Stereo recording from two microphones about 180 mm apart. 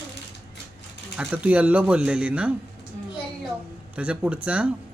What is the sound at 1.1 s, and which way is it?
Speech, 5° right (ahead or behind).